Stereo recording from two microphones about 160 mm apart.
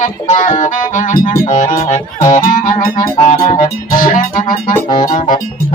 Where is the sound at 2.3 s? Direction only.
60° left (ahead or behind).